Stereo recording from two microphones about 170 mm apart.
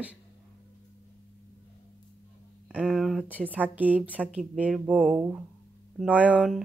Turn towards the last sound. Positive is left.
turn(degrees=-5)  # may be behind; listen again after turning